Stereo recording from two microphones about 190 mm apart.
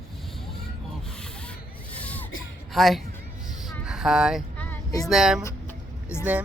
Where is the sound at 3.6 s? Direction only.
Centre (ahead or behind).